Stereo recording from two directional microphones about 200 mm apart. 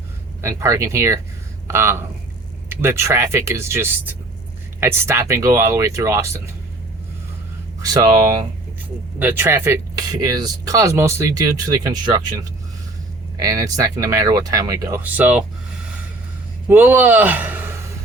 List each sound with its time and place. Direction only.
0.4 s speech: 15° right (ahead or behind)
7.8 s speech: 20° right (ahead or behind)
13.3 s speech: 15° right (ahead or behind)
16.6 s speech: 10° right (ahead or behind)